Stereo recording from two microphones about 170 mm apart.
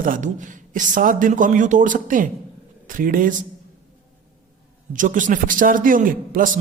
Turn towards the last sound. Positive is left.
turn(degrees=-55)  # may be behind; listen again after turning